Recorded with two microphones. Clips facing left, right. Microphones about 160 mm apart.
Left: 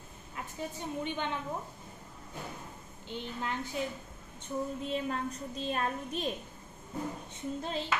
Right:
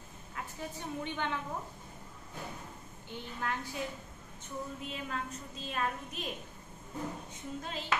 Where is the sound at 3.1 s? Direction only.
20° left (ahead or behind).